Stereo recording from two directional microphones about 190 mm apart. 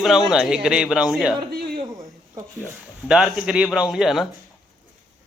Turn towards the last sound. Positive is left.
turn(degrees=0)  # may be behind; listen again after turning